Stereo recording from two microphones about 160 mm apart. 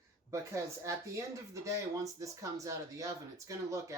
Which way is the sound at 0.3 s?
20° right (ahead or behind).